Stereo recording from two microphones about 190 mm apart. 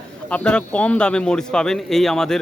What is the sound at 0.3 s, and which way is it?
A man's voice, 5° left (ahead or behind).